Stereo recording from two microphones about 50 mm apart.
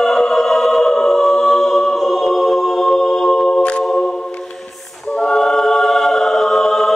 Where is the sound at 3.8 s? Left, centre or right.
Centre.